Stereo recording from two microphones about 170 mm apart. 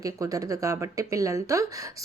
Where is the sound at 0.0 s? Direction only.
20° right (ahead or behind).